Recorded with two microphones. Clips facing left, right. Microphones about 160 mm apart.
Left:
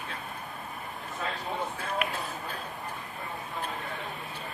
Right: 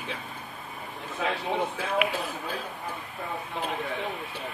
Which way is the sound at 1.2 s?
75° right (ahead or behind).